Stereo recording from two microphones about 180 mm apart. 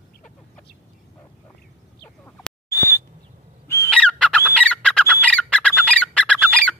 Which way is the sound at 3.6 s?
15° left (ahead or behind).